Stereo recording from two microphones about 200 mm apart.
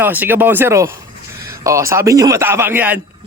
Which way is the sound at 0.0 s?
10° right (ahead or behind).